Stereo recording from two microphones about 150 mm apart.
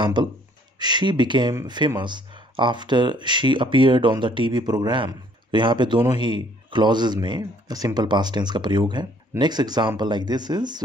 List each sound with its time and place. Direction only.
0.0 s speech: 30° right (ahead or behind)
1.5 s speech: 20° right (ahead or behind)
1.8 s speech: 30° right (ahead or behind)